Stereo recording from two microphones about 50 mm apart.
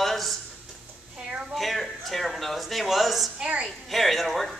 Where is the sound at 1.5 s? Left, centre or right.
Centre.